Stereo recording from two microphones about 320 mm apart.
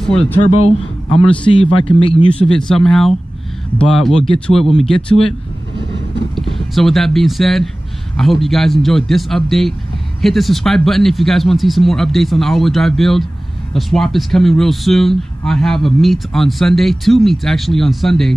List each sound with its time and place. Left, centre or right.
0.0 s speech: centre
0.6 s a man's voice: centre
2.3 s speech: centre
6.3 s speech: centre